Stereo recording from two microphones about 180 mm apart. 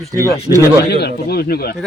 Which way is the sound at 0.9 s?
65° left (ahead or behind).